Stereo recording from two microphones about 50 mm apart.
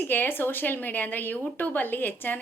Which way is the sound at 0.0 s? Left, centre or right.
Left.